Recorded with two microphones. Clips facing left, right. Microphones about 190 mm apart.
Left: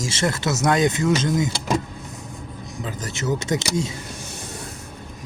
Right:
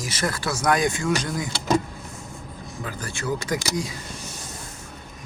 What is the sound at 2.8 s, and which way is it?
Speech, 20° left (ahead or behind).